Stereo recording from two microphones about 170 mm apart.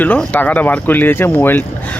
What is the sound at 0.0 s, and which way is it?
Speech, 10° left (ahead or behind).